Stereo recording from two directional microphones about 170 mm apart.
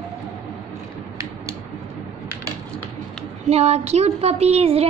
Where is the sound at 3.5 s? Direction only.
40° right (ahead or behind).